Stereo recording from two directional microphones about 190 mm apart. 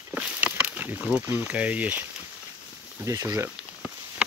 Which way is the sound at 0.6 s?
10° right (ahead or behind).